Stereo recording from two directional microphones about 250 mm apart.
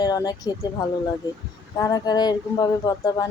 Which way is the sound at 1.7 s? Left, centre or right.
Centre.